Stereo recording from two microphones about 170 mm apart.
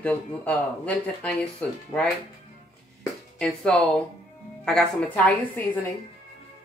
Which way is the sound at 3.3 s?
5° left (ahead or behind).